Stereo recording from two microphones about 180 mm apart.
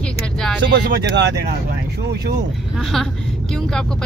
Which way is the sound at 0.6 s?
70° right (ahead or behind).